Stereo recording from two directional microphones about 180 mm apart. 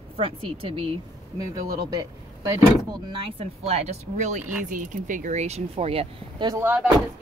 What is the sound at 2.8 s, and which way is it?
Speech, 30° right (ahead or behind).